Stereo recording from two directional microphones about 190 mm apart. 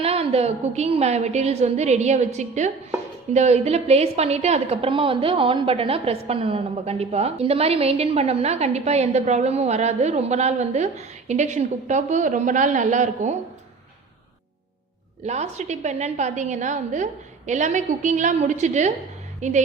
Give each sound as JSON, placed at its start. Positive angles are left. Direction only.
{"t": 0.0, "sound": "a woman's voice", "side_deg": -30}
{"t": 15.3, "sound": "a woman's voice", "side_deg": -35}